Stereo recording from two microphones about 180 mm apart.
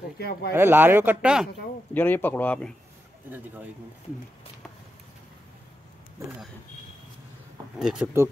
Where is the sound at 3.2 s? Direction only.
10° right (ahead or behind).